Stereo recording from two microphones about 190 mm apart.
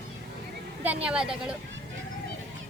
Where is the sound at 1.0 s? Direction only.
5° right (ahead or behind).